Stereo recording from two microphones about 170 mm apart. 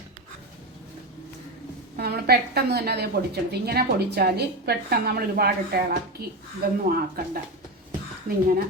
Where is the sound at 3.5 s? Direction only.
70° right (ahead or behind).